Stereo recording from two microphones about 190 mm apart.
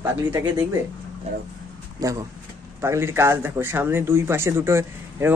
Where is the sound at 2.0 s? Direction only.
20° right (ahead or behind).